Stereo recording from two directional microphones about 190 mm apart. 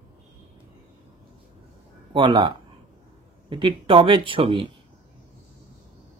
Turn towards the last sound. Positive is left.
turn(degrees=-25)  # may be behind; listen again after turning